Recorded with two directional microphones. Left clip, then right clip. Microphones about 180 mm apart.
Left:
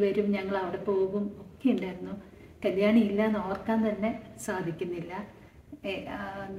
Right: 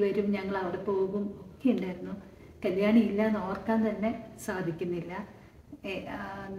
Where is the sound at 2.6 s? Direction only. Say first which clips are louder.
Left 1 dB; 20° left (ahead or behind).